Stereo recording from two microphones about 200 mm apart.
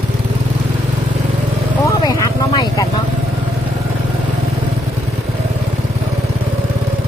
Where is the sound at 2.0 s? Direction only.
20° left (ahead or behind).